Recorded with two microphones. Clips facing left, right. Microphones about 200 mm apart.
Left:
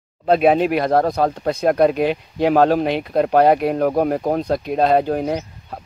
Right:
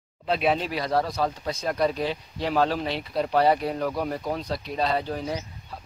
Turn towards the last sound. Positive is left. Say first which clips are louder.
# left 8 dB
turn(degrees=60)  # may be behind; listen again after turning